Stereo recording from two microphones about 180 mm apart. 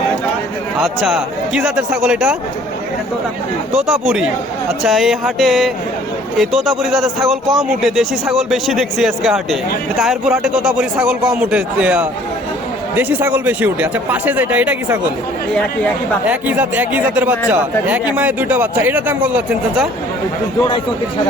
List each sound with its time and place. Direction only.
0.8 s a man's voice: centre (ahead or behind)
3.8 s a man's voice: centre (ahead or behind)
16.2 s a man's voice: 10° right (ahead or behind)